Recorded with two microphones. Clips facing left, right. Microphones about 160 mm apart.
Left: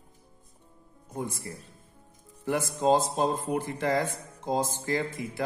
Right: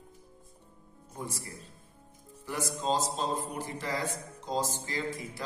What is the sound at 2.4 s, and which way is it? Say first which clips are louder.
A man's voice: left 7 dB; 55° left (ahead or behind).